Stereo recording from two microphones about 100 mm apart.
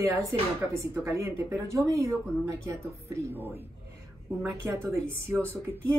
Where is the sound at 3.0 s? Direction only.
30° right (ahead or behind).